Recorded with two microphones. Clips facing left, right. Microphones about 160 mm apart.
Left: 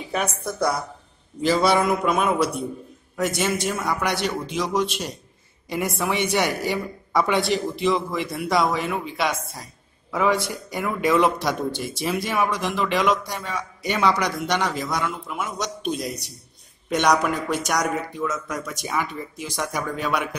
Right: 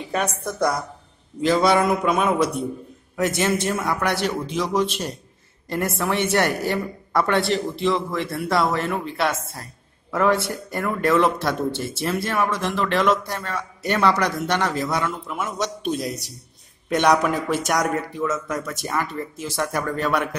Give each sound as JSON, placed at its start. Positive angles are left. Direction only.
{"t": 0.1, "sound": "speech", "side_deg": 0}
{"t": 4.5, "sound": "speech", "side_deg": 5}
{"t": 11.1, "sound": "speech", "side_deg": 15}
{"t": 11.4, "sound": "speech", "side_deg": 0}
{"t": 13.8, "sound": "speech", "side_deg": 10}
{"t": 14.5, "sound": "speech", "side_deg": -5}